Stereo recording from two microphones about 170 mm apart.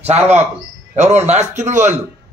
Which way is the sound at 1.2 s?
40° right (ahead or behind).